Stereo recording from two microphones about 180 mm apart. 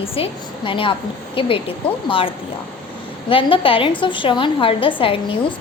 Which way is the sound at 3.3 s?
30° left (ahead or behind).